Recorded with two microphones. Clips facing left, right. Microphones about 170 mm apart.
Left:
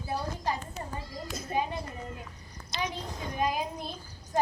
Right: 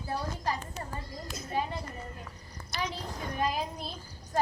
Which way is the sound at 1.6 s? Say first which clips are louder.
Left 2 dB; 15° left (ahead or behind).